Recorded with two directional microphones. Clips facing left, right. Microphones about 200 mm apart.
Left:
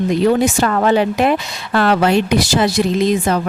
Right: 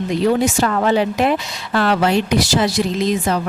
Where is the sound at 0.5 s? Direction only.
55° left (ahead or behind).